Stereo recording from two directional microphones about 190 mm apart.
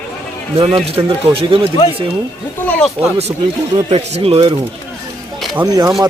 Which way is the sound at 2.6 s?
10° left (ahead or behind).